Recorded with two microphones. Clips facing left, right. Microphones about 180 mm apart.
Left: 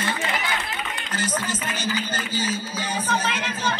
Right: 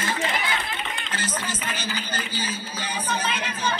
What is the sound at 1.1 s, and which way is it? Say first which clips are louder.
Speech: left 5 dB; 45° left (ahead or behind).